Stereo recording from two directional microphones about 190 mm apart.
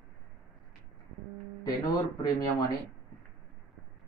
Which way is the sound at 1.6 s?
20° left (ahead or behind).